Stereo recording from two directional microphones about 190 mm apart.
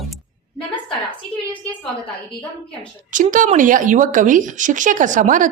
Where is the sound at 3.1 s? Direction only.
45° right (ahead or behind).